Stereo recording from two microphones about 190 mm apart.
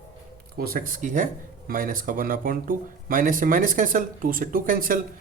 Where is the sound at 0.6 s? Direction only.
50° right (ahead or behind).